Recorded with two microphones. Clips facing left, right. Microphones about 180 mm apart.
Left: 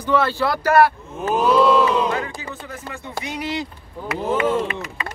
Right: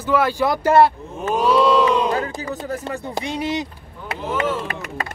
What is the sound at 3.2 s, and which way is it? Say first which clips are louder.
Speech: right 2 dB; 25° right (ahead or behind).